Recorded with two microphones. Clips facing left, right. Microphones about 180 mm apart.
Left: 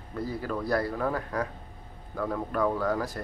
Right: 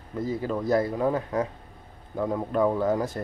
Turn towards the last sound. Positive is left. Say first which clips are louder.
# right 4 dB
turn(degrees=-25)  # may be behind; listen again after turning